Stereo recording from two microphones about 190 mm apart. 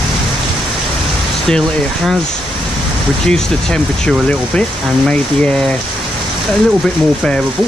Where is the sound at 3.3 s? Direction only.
5° left (ahead or behind).